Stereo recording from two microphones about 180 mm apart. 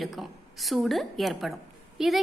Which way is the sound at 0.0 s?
Centre (ahead or behind).